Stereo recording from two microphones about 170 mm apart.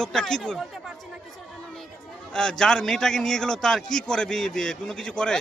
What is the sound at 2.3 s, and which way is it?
A man's voice, 5° left (ahead or behind).